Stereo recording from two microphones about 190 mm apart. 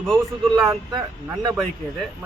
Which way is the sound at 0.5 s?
20° right (ahead or behind).